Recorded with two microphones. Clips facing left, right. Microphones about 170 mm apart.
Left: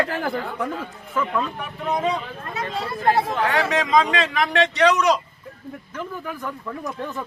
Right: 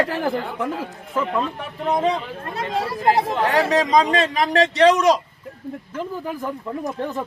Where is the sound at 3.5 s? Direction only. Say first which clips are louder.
Right 3 dB; 35° right (ahead or behind).